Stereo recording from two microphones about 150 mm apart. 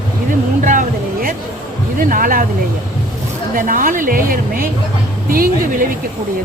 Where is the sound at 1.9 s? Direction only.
65° right (ahead or behind).